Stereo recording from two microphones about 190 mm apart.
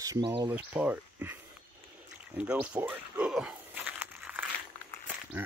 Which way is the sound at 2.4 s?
5° right (ahead or behind).